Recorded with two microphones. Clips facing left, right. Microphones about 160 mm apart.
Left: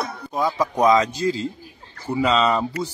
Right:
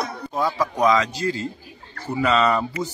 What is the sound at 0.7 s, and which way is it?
Speech, 30° left (ahead or behind).